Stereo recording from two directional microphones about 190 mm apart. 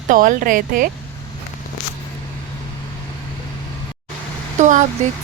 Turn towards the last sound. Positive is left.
turn(degrees=-40)  # may be behind; listen again after turning